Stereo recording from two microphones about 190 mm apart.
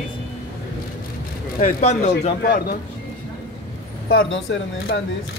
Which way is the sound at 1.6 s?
40° left (ahead or behind).